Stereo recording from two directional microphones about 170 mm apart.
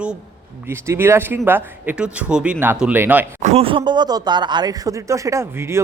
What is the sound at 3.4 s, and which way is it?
Speech, 35° right (ahead or behind).